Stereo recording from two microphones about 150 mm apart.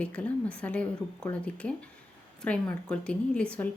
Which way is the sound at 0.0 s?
10° left (ahead or behind).